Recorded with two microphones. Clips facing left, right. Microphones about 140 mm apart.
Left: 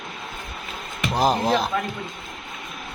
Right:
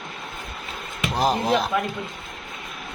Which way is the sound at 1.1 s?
Centre (ahead or behind).